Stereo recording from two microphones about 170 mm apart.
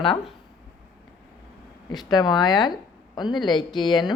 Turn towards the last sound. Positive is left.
turn(degrees=25)  # may be behind; listen again after turning